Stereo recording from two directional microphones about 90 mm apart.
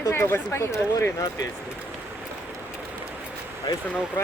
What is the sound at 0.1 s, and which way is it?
Speech, 25° left (ahead or behind).